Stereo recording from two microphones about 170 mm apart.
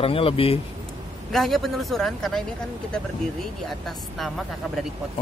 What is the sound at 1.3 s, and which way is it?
Speech, centre (ahead or behind).